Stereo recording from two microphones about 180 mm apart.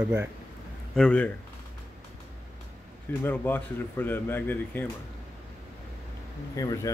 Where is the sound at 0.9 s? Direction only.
5° left (ahead or behind).